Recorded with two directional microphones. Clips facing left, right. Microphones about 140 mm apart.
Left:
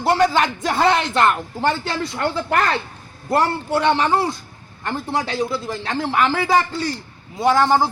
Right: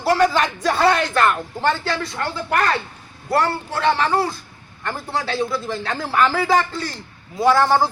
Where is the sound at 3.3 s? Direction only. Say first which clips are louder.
Left 2 dB; 25° left (ahead or behind).